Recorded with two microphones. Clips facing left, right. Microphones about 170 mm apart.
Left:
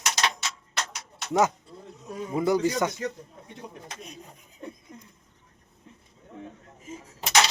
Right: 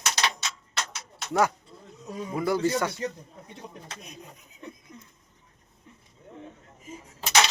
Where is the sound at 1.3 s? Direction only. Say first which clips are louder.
Left 1 dB; 20° left (ahead or behind).